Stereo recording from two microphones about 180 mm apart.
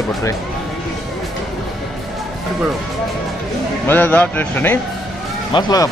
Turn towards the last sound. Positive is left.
turn(degrees=25)  # may be behind; listen again after turning